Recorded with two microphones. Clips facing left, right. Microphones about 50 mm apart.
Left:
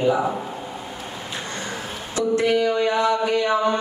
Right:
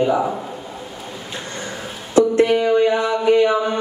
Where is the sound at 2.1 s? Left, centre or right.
Right.